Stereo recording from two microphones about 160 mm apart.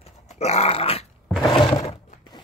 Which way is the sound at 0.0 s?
40° left (ahead or behind).